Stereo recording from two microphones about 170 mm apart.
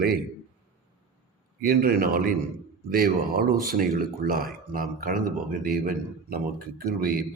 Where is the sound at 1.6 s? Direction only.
60° right (ahead or behind).